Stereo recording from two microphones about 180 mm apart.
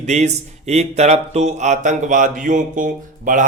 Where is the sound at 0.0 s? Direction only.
40° right (ahead or behind).